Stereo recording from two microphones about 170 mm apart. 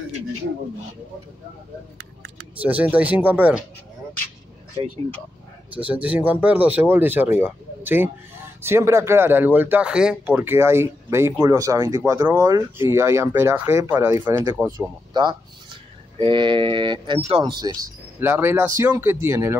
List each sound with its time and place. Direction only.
2.5 s speech: 10° right (ahead or behind)
5.8 s speech: 10° right (ahead or behind); by 17.7 s 25° right (ahead or behind)
18.2 s speech: 15° right (ahead or behind)